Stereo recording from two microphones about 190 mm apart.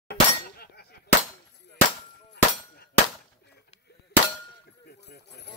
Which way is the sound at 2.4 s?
60° left (ahead or behind).